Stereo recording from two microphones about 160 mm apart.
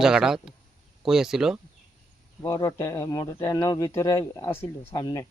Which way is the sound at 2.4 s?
20° left (ahead or behind).